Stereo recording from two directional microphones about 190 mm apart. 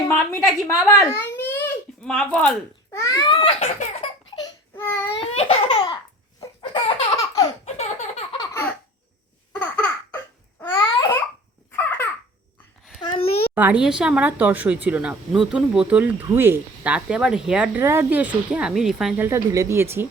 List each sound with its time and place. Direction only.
0.1 s a woman's voice: 5° left (ahead or behind)
0.9 s a sound: 15° left (ahead or behind)
2.9 s baby cry: 15° left (ahead or behind); by 4.1 s 35° left (ahead or behind)
4.4 s baby cry: 15° left (ahead or behind)
5.1 s laughter: 30° left (ahead or behind)
6.4 s chicken: 25° left (ahead or behind)
7.6 s a sound: 35° left (ahead or behind)
9.5 s laughter: 10° left (ahead or behind)
10.8 s babbling: 20° left (ahead or behind)
13.0 s a sound: 25° left (ahead or behind)
13.6 s speech: 5° right (ahead or behind)